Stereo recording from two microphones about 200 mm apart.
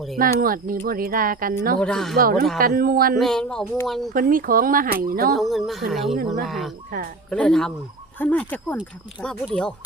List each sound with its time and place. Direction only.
0.2 s speech: 45° right (ahead or behind)
1.8 s speech: 5° left (ahead or behind)
2.1 s speech: 50° right (ahead or behind)
3.2 s speech: centre (ahead or behind)
4.1 s speech: 45° right (ahead or behind)
5.3 s speech: centre (ahead or behind)